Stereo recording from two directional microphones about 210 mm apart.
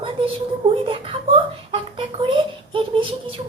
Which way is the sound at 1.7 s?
25° right (ahead or behind).